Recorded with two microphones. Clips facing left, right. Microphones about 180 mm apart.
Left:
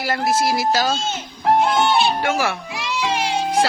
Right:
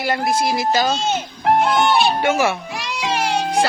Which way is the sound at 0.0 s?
Centre (ahead or behind).